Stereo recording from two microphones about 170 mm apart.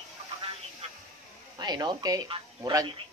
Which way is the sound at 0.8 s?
35° right (ahead or behind).